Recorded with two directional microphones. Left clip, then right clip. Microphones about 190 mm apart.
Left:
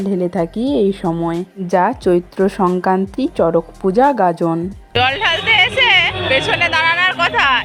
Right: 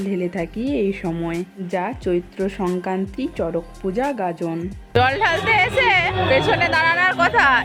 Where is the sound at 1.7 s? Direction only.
25° left (ahead or behind).